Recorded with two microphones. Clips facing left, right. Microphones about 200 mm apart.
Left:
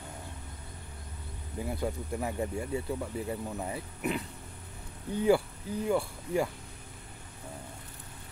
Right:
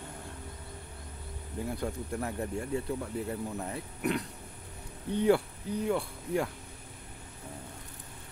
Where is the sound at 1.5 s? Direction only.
5° left (ahead or behind).